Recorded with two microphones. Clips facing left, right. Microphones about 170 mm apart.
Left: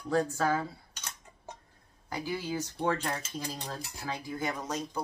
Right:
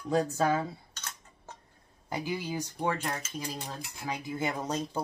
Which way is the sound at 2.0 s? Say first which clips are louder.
Right 1 dB; 20° right (ahead or behind).